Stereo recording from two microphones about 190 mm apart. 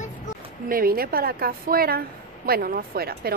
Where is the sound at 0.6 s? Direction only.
50° right (ahead or behind).